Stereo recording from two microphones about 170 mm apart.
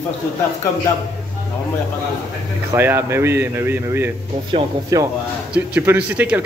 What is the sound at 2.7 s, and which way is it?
Speech, 15° right (ahead or behind).